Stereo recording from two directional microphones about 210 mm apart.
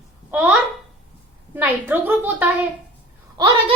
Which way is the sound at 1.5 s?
10° right (ahead or behind).